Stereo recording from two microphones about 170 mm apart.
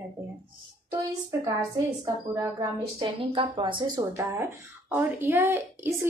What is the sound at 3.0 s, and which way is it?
Speech, 30° right (ahead or behind).